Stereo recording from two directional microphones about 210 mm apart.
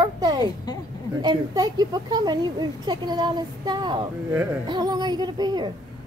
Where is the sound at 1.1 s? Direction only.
20° right (ahead or behind).